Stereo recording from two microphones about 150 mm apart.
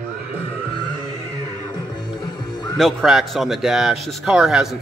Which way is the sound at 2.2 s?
30° left (ahead or behind).